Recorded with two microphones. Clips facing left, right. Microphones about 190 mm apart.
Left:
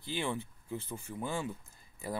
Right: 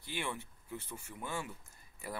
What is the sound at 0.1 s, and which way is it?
Speech, 30° left (ahead or behind).